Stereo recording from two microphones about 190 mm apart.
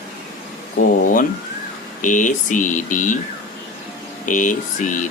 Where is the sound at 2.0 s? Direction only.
40° left (ahead or behind).